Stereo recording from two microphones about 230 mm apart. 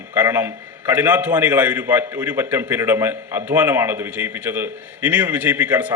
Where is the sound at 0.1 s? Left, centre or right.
Centre.